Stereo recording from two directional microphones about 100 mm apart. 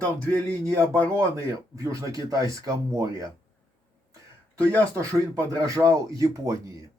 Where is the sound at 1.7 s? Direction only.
30° right (ahead or behind).